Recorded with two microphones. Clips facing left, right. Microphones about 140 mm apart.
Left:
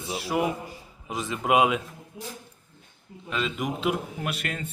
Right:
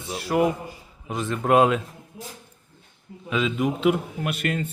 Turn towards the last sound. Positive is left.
turn(degrees=0)  # may be behind; listen again after turning